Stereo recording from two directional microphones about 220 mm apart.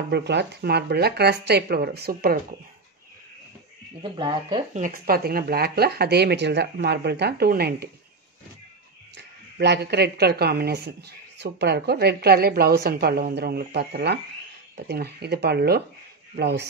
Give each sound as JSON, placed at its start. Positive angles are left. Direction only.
{"t": 0.1, "sound": "speech", "side_deg": -50}
{"t": 4.0, "sound": "speech", "side_deg": -20}
{"t": 4.7, "sound": "speech", "side_deg": -40}
{"t": 9.1, "sound": "speech", "side_deg": -50}